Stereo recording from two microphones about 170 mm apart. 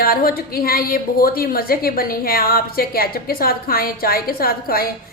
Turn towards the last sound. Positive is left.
turn(degrees=60)  # may be behind; listen again after turning